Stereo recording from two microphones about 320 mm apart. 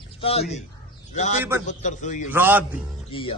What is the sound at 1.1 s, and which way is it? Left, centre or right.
A man's voice, left.